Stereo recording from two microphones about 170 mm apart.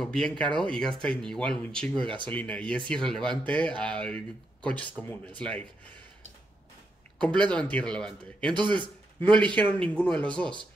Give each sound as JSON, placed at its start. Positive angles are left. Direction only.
{"t": 0.0, "sound": "speech", "side_deg": 5}
{"t": 2.0, "sound": "speech", "side_deg": -30}
{"t": 2.2, "sound": "speech", "side_deg": 10}
{"t": 7.2, "sound": "speech", "side_deg": 5}
{"t": 8.5, "sound": "speech", "side_deg": -30}
{"t": 9.6, "sound": "speech", "side_deg": 10}